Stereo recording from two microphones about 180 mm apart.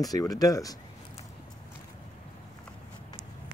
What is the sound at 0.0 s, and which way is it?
Speech, 20° left (ahead or behind).